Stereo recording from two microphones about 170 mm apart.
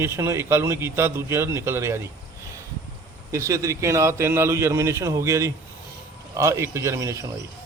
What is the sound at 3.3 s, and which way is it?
A man's voice, 20° right (ahead or behind).